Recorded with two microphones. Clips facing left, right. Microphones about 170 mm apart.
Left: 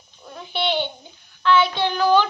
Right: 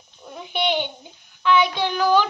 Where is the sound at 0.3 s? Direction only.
15° right (ahead or behind).